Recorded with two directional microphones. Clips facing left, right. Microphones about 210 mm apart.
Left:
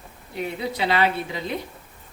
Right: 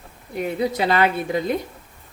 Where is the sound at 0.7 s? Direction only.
45° right (ahead or behind).